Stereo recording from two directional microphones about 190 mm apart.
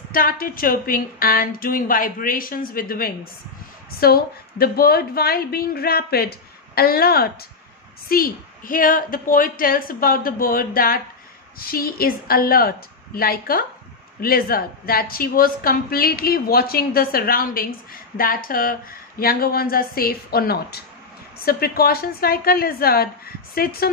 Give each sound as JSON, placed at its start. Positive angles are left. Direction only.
{"t": 0.1, "sound": "a woman's voice", "side_deg": 50}